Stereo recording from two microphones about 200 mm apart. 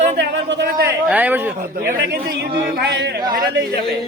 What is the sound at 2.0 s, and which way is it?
Speech, 55° right (ahead or behind).